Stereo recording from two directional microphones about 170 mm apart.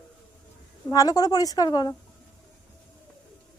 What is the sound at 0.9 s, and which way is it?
A woman's voice, 20° left (ahead or behind).